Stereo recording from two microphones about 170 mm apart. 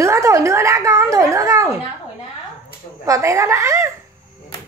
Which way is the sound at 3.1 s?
20° right (ahead or behind).